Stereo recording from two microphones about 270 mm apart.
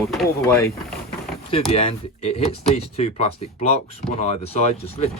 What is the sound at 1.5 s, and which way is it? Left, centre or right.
Speech, left.